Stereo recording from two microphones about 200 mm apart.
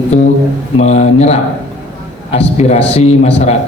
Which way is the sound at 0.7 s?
35° left (ahead or behind).